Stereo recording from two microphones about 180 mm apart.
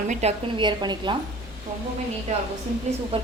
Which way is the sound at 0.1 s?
35° right (ahead or behind).